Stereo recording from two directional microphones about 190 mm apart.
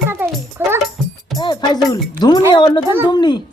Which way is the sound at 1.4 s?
20° left (ahead or behind).